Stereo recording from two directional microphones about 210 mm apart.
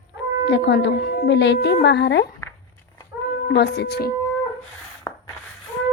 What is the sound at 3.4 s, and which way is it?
Speech, 55° left (ahead or behind).